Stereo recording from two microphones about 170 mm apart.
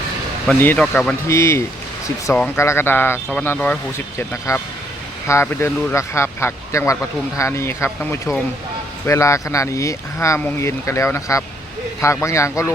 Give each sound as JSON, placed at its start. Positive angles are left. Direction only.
{"t": 0.4, "sound": "speech", "side_deg": 10}